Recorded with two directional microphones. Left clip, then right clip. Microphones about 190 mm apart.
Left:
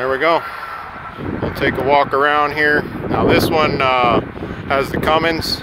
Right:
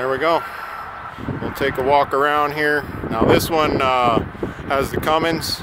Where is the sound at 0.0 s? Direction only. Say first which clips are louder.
Left 3 dB; centre (ahead or behind).